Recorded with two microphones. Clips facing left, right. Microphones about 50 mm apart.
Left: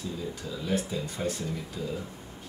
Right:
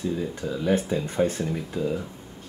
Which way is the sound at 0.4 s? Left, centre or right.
Right.